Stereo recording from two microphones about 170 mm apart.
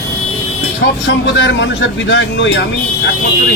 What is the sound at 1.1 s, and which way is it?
Speech, 90° left.